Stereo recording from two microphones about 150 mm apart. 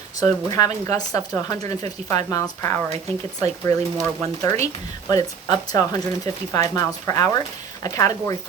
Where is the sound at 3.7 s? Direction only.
45° right (ahead or behind).